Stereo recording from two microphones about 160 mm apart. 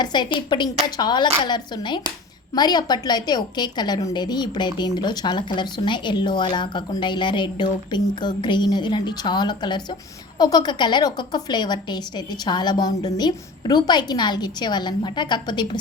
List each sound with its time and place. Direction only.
0.0 s a woman's voice: 30° left (ahead or behind)